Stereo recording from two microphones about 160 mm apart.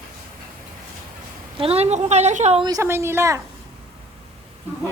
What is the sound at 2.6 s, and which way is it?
Speech, 20° right (ahead or behind).